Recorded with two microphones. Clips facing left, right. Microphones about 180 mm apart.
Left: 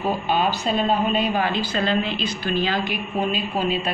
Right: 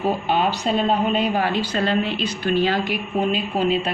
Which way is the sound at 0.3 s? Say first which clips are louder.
Even; 65° right (ahead or behind).